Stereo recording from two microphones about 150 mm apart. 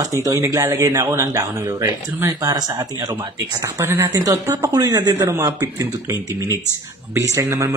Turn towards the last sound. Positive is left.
turn(degrees=-20)  # may be behind; listen again after turning